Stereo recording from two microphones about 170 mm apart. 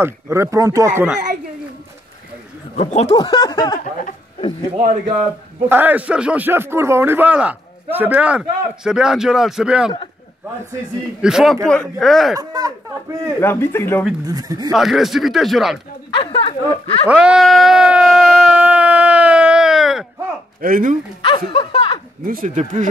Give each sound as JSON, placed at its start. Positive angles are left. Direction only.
{"t": 0.0, "sound": "speech", "side_deg": -15}
{"t": 2.7, "sound": "speech", "side_deg": 40}
{"t": 5.7, "sound": "speech", "side_deg": -10}
{"t": 11.1, "sound": "speech", "side_deg": -5}
{"t": 12.4, "sound": "speech", "side_deg": -20}
{"t": 13.4, "sound": "speech", "side_deg": 15}
{"t": 14.2, "sound": "speech", "side_deg": -20}
{"t": 14.7, "sound": "speech", "side_deg": 0}
{"t": 16.1, "sound": "speech", "side_deg": 30}
{"t": 17.1, "sound": "a sound", "side_deg": -5}
{"t": 20.6, "sound": "speech", "side_deg": -55}
{"t": 21.5, "sound": "speech", "side_deg": 30}
{"t": 22.2, "sound": "speech", "side_deg": -55}